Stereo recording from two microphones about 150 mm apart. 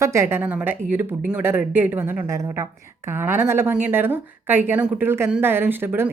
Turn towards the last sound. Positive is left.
turn(degrees=-15)  # may be behind; listen again after turning